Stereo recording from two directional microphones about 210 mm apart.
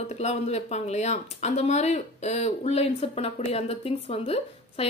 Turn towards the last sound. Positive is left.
turn(degrees=30)  # may be behind; listen again after turning